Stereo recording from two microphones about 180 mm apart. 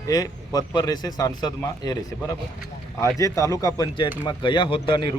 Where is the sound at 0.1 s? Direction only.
20° left (ahead or behind).